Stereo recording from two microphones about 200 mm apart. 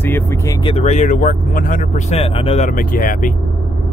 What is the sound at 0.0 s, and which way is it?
Speech, 10° left (ahead or behind).